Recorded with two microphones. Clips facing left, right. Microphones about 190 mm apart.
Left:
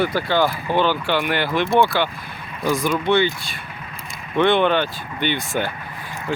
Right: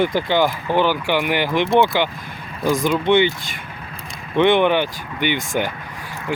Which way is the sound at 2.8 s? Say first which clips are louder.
Right 3 dB; 15° right (ahead or behind).